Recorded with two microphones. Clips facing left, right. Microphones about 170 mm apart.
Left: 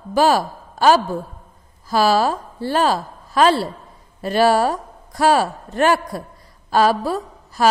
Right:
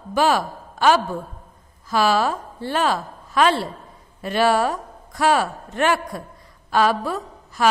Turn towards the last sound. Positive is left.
turn(degrees=35)  # may be behind; listen again after turning